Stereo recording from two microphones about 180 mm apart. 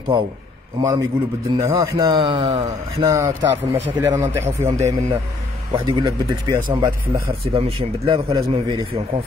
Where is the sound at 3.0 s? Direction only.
20° right (ahead or behind).